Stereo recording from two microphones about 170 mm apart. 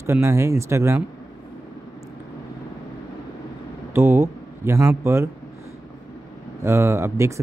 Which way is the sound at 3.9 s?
15° right (ahead or behind).